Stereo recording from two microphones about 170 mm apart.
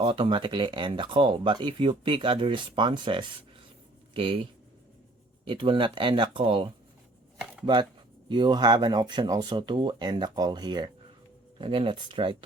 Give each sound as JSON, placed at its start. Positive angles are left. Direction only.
{"t": 0.0, "sound": "speech", "side_deg": -30}
{"t": 5.5, "sound": "speech", "side_deg": -30}